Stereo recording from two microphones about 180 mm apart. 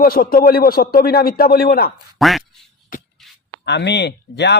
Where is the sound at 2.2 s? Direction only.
Centre (ahead or behind).